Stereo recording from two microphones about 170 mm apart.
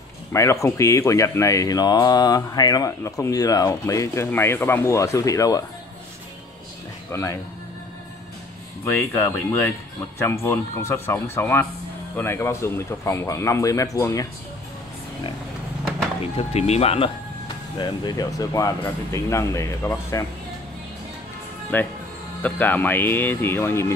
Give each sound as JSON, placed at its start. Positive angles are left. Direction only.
{"t": 0.3, "sound": "speech", "side_deg": 15}
{"t": 7.1, "sound": "speech", "side_deg": 15}
{"t": 8.8, "sound": "speech", "side_deg": 15}
{"t": 16.3, "sound": "speech", "side_deg": 40}
{"t": 17.7, "sound": "speech", "side_deg": 25}
{"t": 21.7, "sound": "speech", "side_deg": 10}